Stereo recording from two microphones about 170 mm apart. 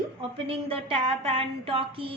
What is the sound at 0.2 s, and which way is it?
Speech, 35° right (ahead or behind).